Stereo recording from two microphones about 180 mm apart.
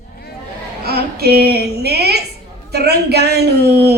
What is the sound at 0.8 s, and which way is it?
A child's voice, 60° right (ahead or behind).